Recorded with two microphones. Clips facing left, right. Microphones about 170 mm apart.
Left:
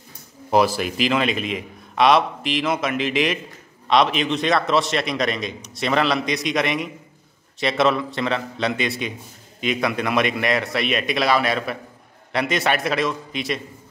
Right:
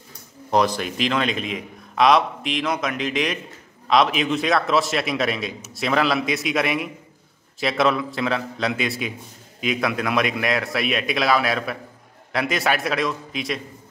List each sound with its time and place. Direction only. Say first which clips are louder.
0.5 s a man's voice: left 2 dB; 5° left (ahead or behind)